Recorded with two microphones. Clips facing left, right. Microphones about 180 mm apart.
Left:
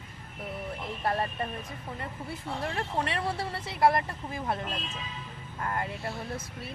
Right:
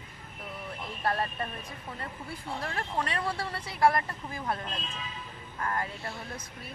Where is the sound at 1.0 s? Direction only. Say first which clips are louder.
Even; 20° left (ahead or behind).